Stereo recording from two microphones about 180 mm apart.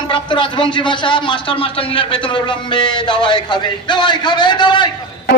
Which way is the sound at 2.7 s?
25° left (ahead or behind).